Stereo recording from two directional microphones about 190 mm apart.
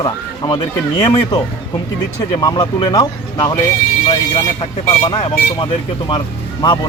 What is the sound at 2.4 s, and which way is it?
Speech, 20° left (ahead or behind).